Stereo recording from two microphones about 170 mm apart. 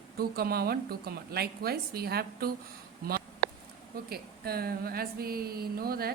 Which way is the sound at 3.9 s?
65° right (ahead or behind).